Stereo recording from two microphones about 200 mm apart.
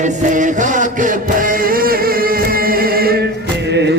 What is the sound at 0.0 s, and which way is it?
Music, 40° right (ahead or behind).